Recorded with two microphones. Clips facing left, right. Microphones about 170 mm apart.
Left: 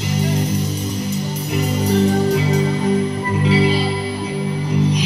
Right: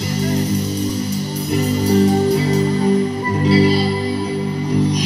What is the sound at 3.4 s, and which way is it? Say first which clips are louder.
Music: right 3 dB; 40° right (ahead or behind).